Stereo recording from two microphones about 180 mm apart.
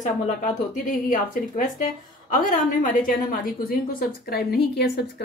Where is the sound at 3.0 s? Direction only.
55° left (ahead or behind).